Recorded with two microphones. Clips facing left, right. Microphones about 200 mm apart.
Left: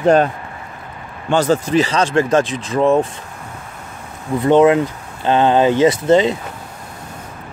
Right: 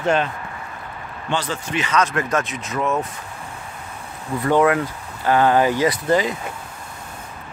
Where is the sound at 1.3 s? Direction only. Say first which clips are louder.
Left 10 dB; 45° left (ahead or behind).